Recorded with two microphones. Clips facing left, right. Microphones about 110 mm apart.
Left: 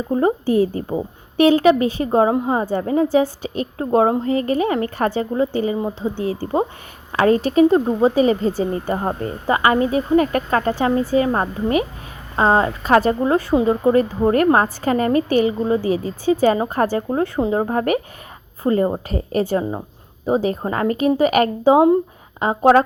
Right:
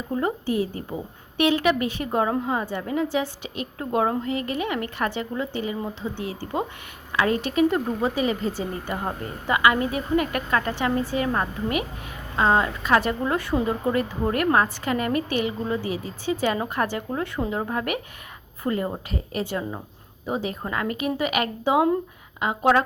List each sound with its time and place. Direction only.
0.1 s speech: 30° left (ahead or behind)